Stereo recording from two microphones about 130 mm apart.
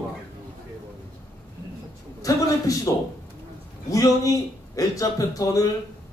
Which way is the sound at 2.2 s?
25° left (ahead or behind).